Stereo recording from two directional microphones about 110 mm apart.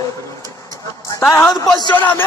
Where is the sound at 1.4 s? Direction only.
Centre (ahead or behind).